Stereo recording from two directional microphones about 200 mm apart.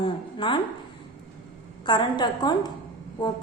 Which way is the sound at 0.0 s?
25° left (ahead or behind).